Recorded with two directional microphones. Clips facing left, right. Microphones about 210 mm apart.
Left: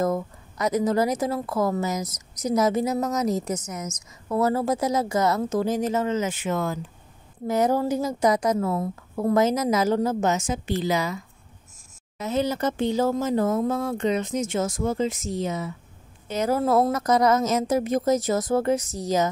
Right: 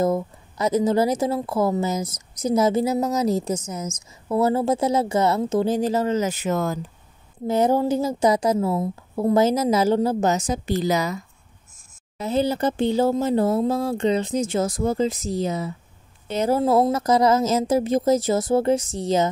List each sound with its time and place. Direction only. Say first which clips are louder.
0.0 s a woman's voice: right 3 dB; 30° right (ahead or behind)
7.4 s a woman's voice: right 3 dB; 30° right (ahead or behind)
12.2 s a woman's voice: right 3 dB; 30° right (ahead or behind)